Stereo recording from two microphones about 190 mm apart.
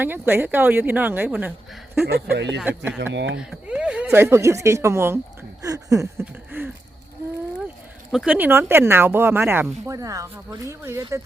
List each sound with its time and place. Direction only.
0.0 s speech: 10° right (ahead or behind)
2.3 s speech: 65° right (ahead or behind)
2.6 s speech: 5° right (ahead or behind)
3.0 s speech: 70° right (ahead or behind)
3.3 s speech: 5° right (ahead or behind)
5.6 s a sound: 20° right (ahead or behind)
8.1 s speech: 5° right (ahead or behind)